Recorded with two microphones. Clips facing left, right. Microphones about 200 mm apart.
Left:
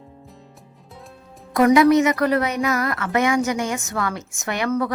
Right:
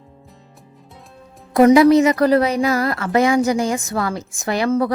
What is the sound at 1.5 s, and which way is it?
A woman's voice, 30° right (ahead or behind).